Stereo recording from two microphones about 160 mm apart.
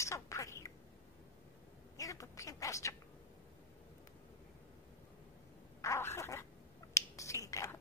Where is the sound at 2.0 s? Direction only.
20° left (ahead or behind).